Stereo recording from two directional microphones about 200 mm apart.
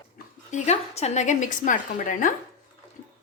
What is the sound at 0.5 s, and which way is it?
A woman's voice, 35° left (ahead or behind).